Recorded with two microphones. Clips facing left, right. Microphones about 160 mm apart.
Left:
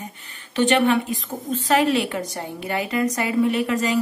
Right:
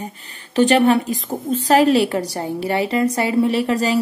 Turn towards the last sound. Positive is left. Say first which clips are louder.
# right 3 dB
turn(degrees=-35)  # may be behind; listen again after turning